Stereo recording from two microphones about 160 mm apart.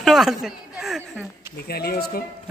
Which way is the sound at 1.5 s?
75° left (ahead or behind).